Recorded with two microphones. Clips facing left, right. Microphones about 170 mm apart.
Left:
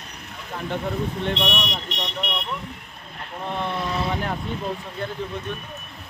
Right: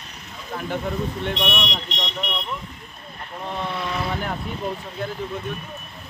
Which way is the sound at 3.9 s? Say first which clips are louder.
Left 1 dB; 20° left (ahead or behind).